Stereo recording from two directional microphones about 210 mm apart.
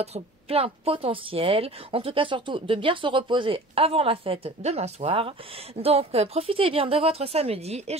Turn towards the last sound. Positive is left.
turn(degrees=-30)  # may be behind; listen again after turning